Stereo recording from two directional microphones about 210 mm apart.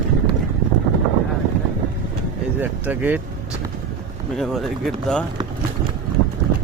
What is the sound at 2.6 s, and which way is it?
Speech, 10° right (ahead or behind).